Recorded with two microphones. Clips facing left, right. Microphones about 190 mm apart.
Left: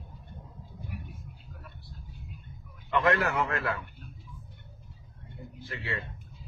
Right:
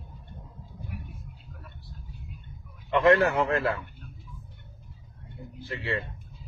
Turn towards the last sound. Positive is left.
turn(degrees=-30)  # may be behind; listen again after turning